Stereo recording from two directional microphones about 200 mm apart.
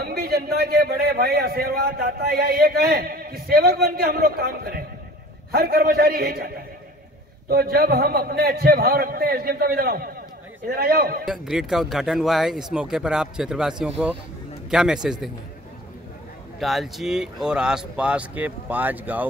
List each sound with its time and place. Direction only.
0.0 s a man's voice: 50° right (ahead or behind)
11.2 s speech: centre (ahead or behind)
16.5 s speech: centre (ahead or behind)